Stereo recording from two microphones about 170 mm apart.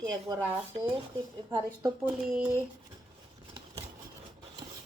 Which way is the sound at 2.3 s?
5° right (ahead or behind).